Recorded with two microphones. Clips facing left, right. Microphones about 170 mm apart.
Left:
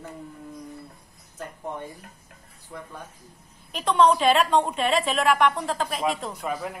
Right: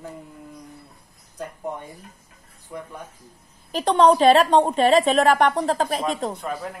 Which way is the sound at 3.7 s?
40° right (ahead or behind).